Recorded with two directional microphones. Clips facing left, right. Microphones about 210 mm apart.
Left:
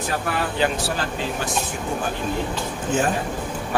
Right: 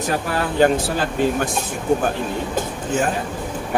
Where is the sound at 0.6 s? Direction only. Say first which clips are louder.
Right 8 dB; 50° right (ahead or behind).